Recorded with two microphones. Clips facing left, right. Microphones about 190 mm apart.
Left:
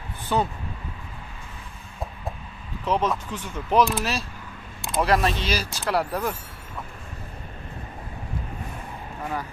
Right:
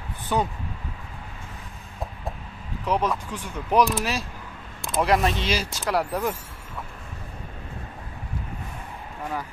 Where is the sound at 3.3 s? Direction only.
10° right (ahead or behind).